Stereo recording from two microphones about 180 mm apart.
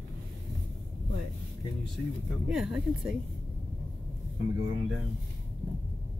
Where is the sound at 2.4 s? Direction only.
5° right (ahead or behind).